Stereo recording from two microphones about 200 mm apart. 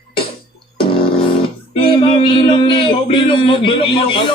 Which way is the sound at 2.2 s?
25° left (ahead or behind).